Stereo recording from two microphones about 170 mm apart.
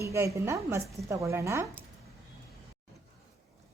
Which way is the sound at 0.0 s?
15° right (ahead or behind).